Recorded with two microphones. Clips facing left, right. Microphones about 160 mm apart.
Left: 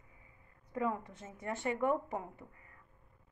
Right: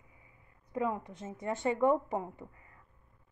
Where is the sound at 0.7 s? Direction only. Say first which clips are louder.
Right 2 dB; 20° right (ahead or behind).